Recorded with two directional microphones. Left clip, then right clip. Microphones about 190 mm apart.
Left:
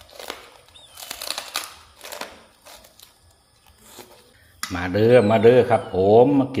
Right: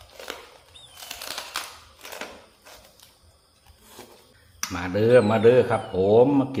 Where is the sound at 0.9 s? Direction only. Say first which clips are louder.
Left 4 dB; 35° left (ahead or behind).